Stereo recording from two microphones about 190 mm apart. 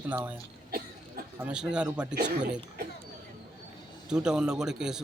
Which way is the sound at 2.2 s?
65° right (ahead or behind).